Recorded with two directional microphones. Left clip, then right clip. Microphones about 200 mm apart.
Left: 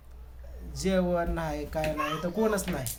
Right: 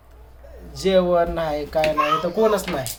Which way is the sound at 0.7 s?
Centre (ahead or behind).